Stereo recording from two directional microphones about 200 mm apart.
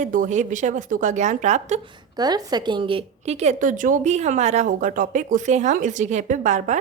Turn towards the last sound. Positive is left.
turn(degrees=-35)  # may be behind; listen again after turning